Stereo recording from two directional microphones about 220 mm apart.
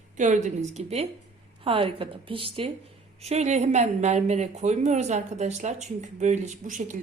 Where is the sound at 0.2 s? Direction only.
35° right (ahead or behind).